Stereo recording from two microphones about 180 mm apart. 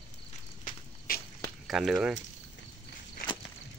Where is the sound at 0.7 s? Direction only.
55° left (ahead or behind).